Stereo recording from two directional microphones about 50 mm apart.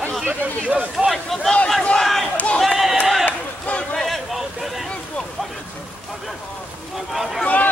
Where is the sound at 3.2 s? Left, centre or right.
Left.